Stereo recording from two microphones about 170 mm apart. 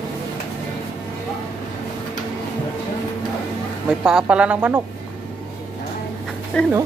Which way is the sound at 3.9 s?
5° right (ahead or behind).